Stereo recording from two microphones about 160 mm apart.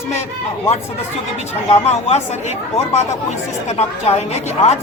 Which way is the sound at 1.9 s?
45° left (ahead or behind).